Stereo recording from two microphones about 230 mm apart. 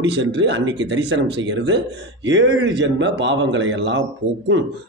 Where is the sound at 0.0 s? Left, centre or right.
Right.